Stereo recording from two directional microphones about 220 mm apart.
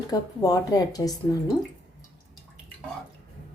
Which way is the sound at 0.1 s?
15° left (ahead or behind).